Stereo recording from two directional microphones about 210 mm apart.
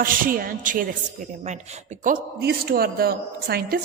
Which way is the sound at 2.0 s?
45° right (ahead or behind).